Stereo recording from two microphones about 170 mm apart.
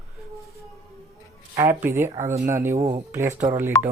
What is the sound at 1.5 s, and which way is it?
Speech, 15° right (ahead or behind).